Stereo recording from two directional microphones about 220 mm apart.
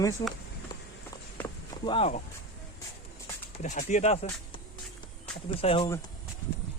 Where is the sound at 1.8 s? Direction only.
25° left (ahead or behind).